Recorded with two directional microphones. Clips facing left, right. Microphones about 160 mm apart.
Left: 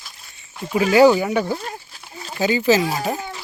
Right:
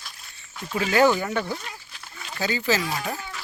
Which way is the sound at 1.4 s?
30° left (ahead or behind).